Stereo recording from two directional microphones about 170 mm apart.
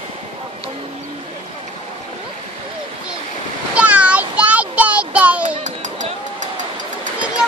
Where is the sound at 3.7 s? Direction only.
10° right (ahead or behind).